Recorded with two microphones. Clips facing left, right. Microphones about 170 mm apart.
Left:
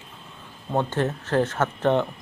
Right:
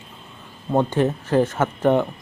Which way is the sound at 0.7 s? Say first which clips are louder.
Right 5 dB; 15° right (ahead or behind).